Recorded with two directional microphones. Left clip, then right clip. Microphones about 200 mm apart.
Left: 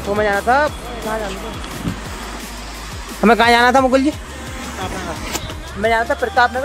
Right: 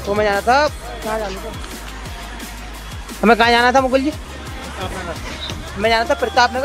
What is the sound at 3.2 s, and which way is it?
Speech, 15° left (ahead or behind).